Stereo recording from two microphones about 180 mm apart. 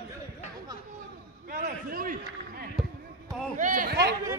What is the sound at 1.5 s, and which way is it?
A man's voice, 55° right (ahead or behind).